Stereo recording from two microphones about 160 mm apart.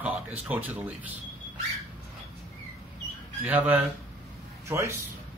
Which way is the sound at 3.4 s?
10° right (ahead or behind).